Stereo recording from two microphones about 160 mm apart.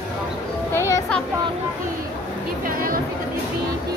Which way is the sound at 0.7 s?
20° left (ahead or behind).